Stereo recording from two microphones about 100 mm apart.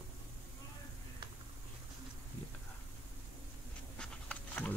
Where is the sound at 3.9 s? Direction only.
10° left (ahead or behind).